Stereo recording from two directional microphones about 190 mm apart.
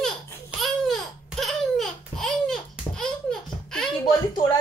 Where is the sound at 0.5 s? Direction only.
Centre (ahead or behind).